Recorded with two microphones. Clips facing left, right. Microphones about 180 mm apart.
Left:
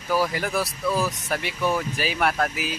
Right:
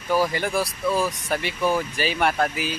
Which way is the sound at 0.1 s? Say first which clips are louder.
Right 2 dB; centre (ahead or behind).